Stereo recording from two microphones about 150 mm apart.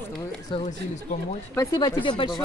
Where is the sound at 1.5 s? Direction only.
20° left (ahead or behind).